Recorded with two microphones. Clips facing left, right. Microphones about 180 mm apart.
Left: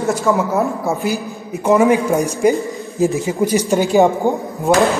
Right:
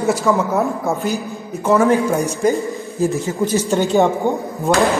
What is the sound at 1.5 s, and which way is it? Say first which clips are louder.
A woman's voice: left 2 dB; 15° left (ahead or behind).